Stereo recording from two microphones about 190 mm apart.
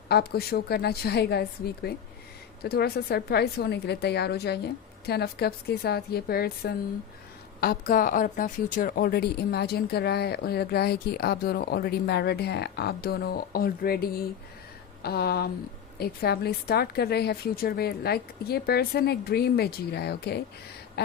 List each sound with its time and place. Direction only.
0.1 s a woman's voice: 55° left (ahead or behind)